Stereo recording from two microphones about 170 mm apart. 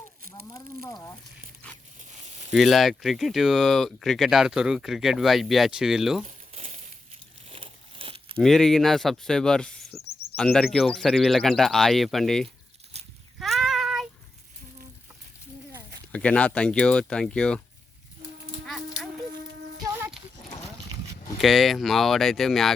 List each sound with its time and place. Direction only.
0.4 s speech: 20° left (ahead or behind)
2.5 s speech: centre (ahead or behind)
6.2 s crumpling: 40° right (ahead or behind)
7.5 s a sound: 35° right (ahead or behind)
8.4 s speech: centre (ahead or behind)
12.9 s cattle: 40° right (ahead or behind)
13.4 s child singing: centre (ahead or behind)
16.1 s speech: 5° left (ahead or behind)
18.6 s a sound: centre (ahead or behind)
19.9 s horse: 10° right (ahead or behind)
21.3 s speech: centre (ahead or behind)